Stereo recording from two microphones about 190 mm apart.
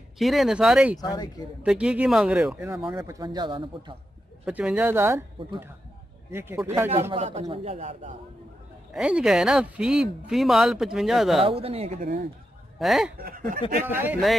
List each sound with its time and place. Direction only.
0.2 s speech: centre (ahead or behind)
0.9 s speech: 20° left (ahead or behind)
1.6 s speech: 5° right (ahead or behind); by 3.9 s 25° right (ahead or behind)
4.5 s speech: 5° right (ahead or behind)
6.3 s speech: 15° right (ahead or behind)
7.2 s speech: 35° right (ahead or behind)
8.9 s speech: 5° right (ahead or behind)
11.4 s speech: 30° right (ahead or behind)
12.7 s speech: centre (ahead or behind)
13.2 s speech: 45° right (ahead or behind)
13.8 s speech: 10° right (ahead or behind)